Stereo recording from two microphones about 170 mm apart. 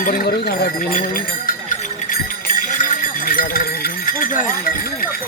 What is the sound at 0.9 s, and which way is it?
Speech, 55° left (ahead or behind).